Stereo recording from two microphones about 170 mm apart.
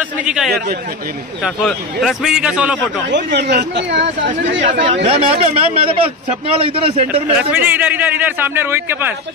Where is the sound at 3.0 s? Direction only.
85° right.